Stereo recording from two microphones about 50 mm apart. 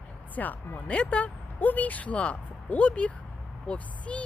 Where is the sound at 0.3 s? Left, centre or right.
Left.